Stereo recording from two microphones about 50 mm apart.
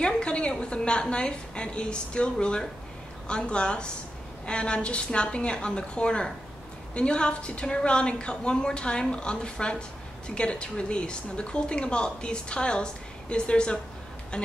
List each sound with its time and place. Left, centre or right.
0.0 s a woman's voice: left